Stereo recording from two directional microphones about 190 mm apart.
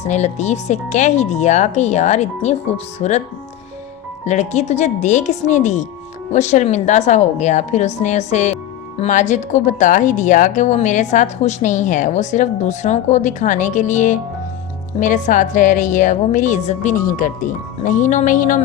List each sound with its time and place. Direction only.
0.1 s a woman's voice: 35° left (ahead or behind)
4.3 s a woman's voice: 35° left (ahead or behind)